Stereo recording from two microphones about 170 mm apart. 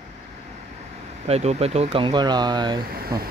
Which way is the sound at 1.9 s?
25° right (ahead or behind).